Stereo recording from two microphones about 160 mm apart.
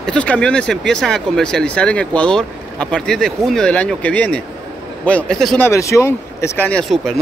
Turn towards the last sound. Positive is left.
turn(degrees=0)  # may be behind; listen again after turning